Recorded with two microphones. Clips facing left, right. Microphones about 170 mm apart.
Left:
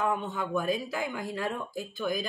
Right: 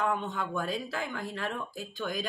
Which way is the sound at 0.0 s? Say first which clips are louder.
Left 1 dB; 10° left (ahead or behind).